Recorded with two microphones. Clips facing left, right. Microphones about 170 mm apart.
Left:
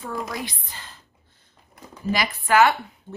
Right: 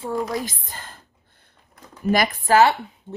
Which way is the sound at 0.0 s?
35° right (ahead or behind).